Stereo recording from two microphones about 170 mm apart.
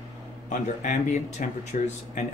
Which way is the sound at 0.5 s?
45° left (ahead or behind).